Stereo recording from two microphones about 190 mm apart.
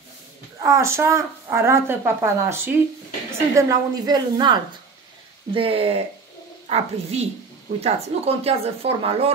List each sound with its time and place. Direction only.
0.6 s a woman's voice: 15° right (ahead or behind)